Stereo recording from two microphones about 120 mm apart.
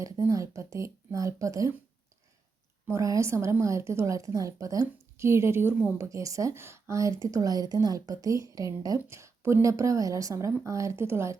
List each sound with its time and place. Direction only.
0.0 s a woman's voice: 25° right (ahead or behind)
2.8 s a woman's voice: 25° right (ahead or behind)